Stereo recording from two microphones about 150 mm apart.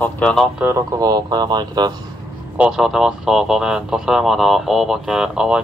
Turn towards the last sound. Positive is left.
turn(degrees=-5)  # may be behind; listen again after turning